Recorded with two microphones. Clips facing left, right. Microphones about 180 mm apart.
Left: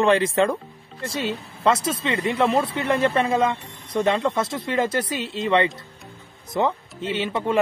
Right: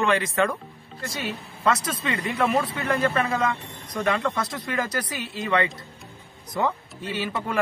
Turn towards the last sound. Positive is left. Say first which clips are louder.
# left 5 dB
turn(degrees=25)  # may be behind; listen again after turning